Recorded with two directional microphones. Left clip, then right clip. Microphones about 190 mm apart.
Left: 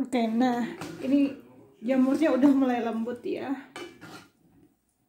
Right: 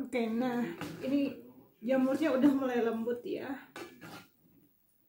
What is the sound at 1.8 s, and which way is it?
Speech, 35° left (ahead or behind).